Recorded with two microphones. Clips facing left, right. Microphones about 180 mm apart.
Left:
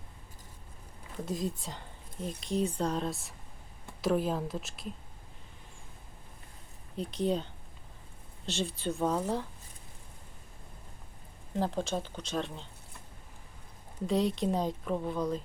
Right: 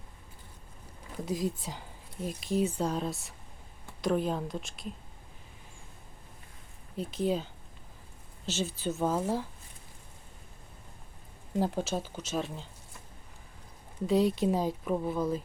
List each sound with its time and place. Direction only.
1.2 s speech: centre (ahead or behind)
6.9 s speech: 5° right (ahead or behind)
11.6 s speech: 10° right (ahead or behind)
14.1 s speech: 5° right (ahead or behind)